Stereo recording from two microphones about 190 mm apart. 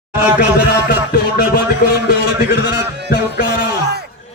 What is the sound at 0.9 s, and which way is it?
A man's voice, 55° left (ahead or behind).